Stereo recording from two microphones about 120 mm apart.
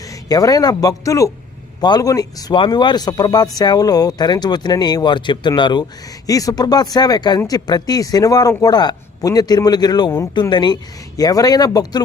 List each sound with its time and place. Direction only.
0.0 s speech: 30° left (ahead or behind)